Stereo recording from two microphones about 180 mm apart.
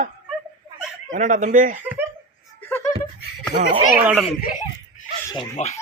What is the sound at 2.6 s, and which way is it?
Laughter, 10° left (ahead or behind).